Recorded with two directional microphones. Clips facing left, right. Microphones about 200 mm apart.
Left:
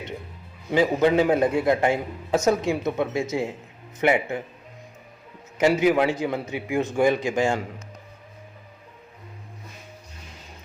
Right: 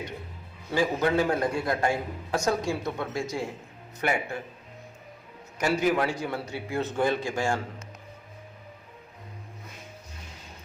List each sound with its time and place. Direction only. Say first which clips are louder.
0.7 s a man's voice: left 5 dB; 20° left (ahead or behind)
5.5 s a man's voice: left 6 dB; 20° left (ahead or behind)